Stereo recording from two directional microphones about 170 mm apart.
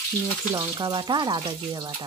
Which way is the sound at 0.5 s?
25° right (ahead or behind).